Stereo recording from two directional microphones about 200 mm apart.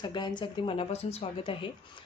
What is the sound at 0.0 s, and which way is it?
A woman's voice, 20° left (ahead or behind).